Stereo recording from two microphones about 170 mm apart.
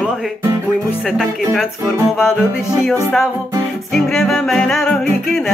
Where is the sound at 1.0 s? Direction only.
Centre (ahead or behind).